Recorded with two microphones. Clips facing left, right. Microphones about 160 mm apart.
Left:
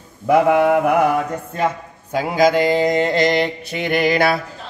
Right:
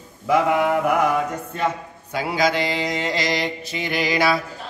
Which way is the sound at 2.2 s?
50° left (ahead or behind).